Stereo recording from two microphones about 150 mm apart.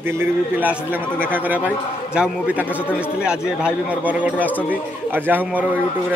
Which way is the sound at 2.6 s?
15° left (ahead or behind).